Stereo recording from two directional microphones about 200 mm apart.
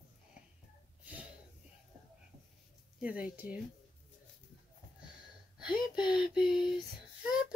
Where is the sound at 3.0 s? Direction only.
5° right (ahead or behind).